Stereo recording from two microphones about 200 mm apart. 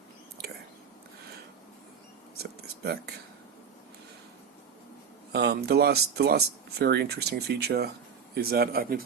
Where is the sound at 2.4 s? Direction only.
50° right (ahead or behind).